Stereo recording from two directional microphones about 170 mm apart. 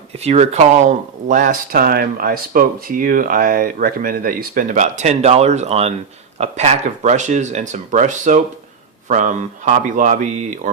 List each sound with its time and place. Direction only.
0.2 s speech: 40° right (ahead or behind)